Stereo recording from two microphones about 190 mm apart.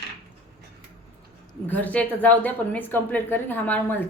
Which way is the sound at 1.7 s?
10° left (ahead or behind).